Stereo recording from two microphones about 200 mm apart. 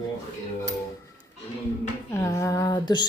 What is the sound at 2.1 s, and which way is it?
Speech, 15° left (ahead or behind).